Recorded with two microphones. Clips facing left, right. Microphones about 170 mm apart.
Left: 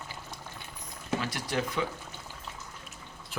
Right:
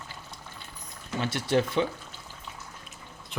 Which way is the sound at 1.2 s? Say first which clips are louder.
Right 6 dB; 25° right (ahead or behind).